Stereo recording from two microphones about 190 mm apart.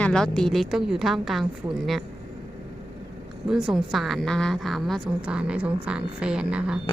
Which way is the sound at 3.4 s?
5° right (ahead or behind).